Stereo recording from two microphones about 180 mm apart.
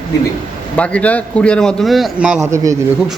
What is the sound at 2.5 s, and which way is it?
Speech, 15° right (ahead or behind).